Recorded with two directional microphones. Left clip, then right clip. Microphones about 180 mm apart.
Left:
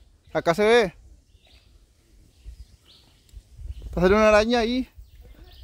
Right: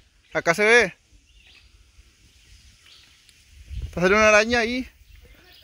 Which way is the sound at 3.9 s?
20° left (ahead or behind).